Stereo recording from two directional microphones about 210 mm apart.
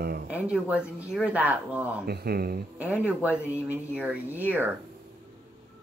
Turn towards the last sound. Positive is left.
turn(degrees=-10)  # may be behind; listen again after turning